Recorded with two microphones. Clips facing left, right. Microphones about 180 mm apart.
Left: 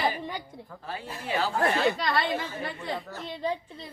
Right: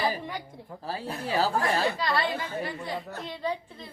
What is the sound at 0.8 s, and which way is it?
Speech, 35° right (ahead or behind).